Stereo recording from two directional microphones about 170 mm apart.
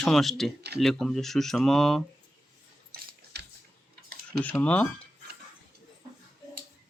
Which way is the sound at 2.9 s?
60° right (ahead or behind).